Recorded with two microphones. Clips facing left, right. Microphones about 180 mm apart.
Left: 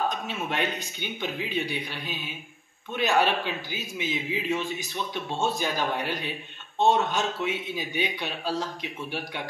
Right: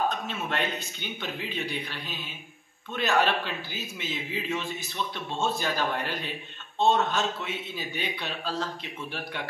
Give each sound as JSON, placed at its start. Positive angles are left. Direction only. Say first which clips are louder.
{"t": 0.3, "sound": "a man's voice", "louder": "left 1 dB", "side_deg": 15}